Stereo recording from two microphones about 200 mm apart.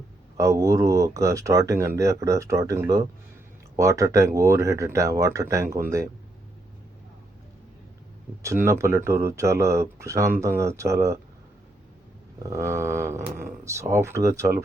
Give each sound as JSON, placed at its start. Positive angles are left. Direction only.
{"t": 0.3, "sound": "speech", "side_deg": -15}
{"t": 8.4, "sound": "speech", "side_deg": -15}
{"t": 12.4, "sound": "speech", "side_deg": -15}